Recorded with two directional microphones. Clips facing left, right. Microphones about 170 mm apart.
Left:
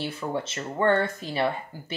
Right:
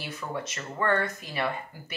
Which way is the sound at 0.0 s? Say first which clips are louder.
Left 5 dB; 30° left (ahead or behind).